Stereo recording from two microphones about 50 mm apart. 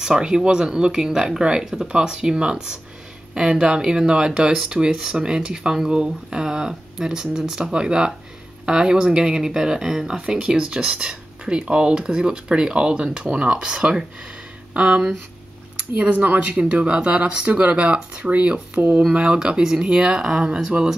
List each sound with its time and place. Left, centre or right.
0.0 s speech: centre